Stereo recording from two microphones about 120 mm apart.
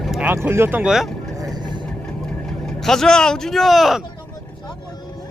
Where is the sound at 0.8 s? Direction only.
5° right (ahead or behind).